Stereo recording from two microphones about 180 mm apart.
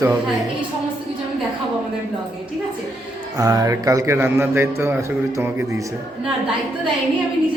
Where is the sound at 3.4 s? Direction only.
20° right (ahead or behind).